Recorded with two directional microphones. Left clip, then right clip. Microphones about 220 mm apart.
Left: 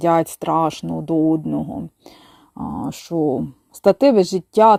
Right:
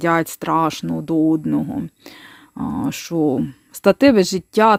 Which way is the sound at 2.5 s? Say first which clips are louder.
Right 3 dB; 30° right (ahead or behind).